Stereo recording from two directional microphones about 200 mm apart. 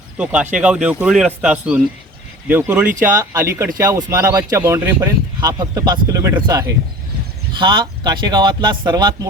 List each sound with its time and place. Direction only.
0.2 s speech: 5° right (ahead or behind); by 9.1 s 20° right (ahead or behind)